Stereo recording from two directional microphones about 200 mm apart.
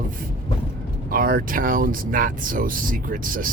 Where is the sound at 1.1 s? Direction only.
45° right (ahead or behind).